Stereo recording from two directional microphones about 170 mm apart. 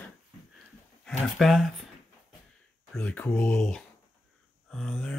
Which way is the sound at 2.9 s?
5° left (ahead or behind).